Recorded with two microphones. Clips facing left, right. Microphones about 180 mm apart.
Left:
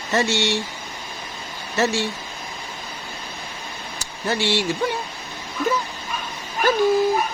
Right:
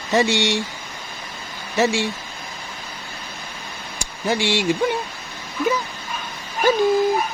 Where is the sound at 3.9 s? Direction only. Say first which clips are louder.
Right 2 dB; 15° right (ahead or behind).